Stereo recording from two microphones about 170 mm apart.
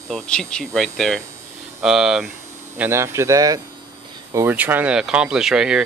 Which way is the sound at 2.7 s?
15° right (ahead or behind).